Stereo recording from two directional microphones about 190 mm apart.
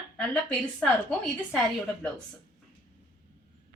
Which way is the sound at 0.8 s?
5° left (ahead or behind).